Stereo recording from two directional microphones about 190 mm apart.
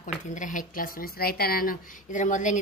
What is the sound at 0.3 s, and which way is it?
A woman's voice, 40° left (ahead or behind).